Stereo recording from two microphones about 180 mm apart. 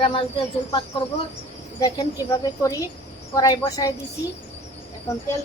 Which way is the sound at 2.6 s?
20° left (ahead or behind).